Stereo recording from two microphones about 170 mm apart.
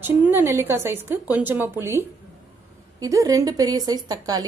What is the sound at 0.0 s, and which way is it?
A woman's voice, 15° right (ahead or behind).